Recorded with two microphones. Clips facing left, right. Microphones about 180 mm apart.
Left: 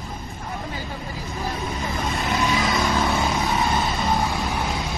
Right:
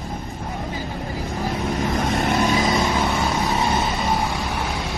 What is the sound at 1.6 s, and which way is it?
Vehicle, 80° right.